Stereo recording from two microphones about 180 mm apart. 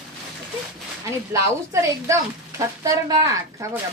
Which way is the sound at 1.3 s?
15° right (ahead or behind).